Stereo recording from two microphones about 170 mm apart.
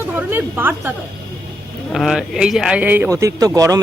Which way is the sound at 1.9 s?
Centre (ahead or behind).